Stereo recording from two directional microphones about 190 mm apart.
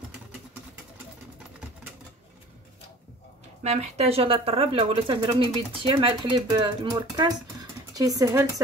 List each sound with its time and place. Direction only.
3.6 s speech: 35° right (ahead or behind); by 8.5 s 20° right (ahead or behind)